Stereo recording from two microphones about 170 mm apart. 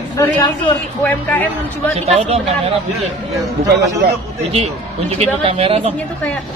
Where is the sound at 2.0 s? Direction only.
35° right (ahead or behind).